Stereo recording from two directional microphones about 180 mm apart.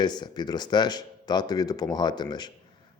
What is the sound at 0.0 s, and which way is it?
Speech, 25° left (ahead or behind).